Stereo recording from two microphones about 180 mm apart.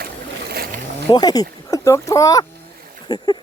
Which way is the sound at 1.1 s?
20° left (ahead or behind).